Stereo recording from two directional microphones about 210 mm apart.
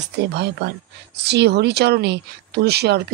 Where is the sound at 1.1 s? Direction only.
55° right (ahead or behind).